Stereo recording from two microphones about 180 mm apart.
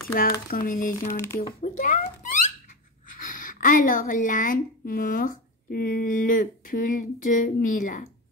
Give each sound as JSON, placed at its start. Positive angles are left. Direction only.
{"t": 0.1, "sound": "speech", "side_deg": 55}
{"t": 1.0, "sound": "speech", "side_deg": 15}
{"t": 1.6, "sound": "speech", "side_deg": 45}
{"t": 3.1, "sound": "a woman's voice", "side_deg": 45}